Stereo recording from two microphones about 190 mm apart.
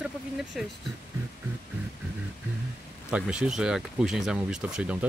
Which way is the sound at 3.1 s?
5° right (ahead or behind).